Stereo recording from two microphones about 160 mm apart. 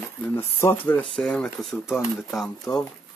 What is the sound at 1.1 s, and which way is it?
Speech, 5° left (ahead or behind).